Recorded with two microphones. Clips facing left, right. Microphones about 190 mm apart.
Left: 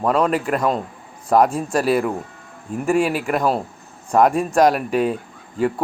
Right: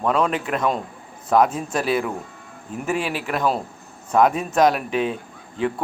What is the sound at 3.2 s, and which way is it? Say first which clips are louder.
Speech: left 3 dB; 5° left (ahead or behind).